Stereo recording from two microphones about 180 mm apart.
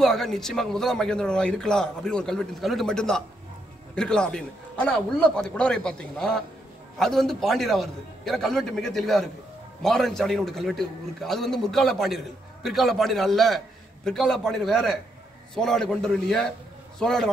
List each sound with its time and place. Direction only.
0.0 s speech: centre (ahead or behind)